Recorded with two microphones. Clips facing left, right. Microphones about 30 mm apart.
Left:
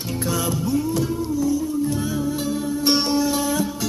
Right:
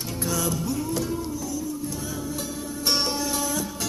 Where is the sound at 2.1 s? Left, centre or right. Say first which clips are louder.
Left 8 dB; left.